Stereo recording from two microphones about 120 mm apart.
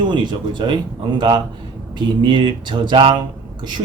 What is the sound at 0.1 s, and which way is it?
Speech, 40° right (ahead or behind).